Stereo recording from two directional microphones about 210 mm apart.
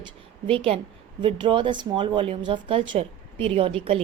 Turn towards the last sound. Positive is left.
turn(degrees=-25)  # may be behind; listen again after turning